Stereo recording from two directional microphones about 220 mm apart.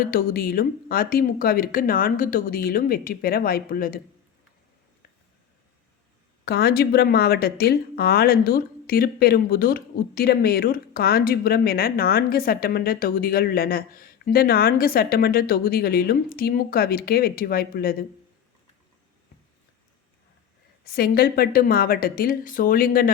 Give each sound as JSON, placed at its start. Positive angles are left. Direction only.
{"t": 0.0, "sound": "speech", "side_deg": 40}
{"t": 6.4, "sound": "speech", "side_deg": 45}
{"t": 20.8, "sound": "speech", "side_deg": 45}